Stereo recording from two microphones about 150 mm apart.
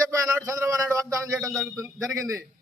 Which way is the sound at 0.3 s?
20° right (ahead or behind).